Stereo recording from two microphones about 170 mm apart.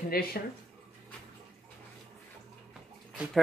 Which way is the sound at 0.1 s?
65° left (ahead or behind).